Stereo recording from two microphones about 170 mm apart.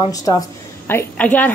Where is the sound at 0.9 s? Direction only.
10° left (ahead or behind).